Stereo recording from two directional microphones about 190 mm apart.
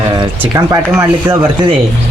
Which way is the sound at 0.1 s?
20° right (ahead or behind).